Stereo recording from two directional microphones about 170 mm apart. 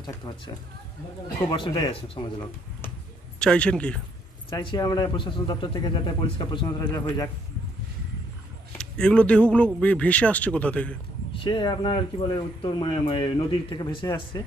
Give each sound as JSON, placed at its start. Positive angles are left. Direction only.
{"t": 1.5, "sound": "speech", "side_deg": 30}
{"t": 3.3, "sound": "speech", "side_deg": 5}
{"t": 4.5, "sound": "speech", "side_deg": 30}
{"t": 8.7, "sound": "speech", "side_deg": 5}
{"t": 11.3, "sound": "speech", "side_deg": 30}